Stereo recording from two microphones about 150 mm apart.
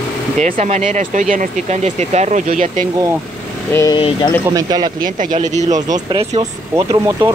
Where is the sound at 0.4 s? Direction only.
50° right (ahead or behind).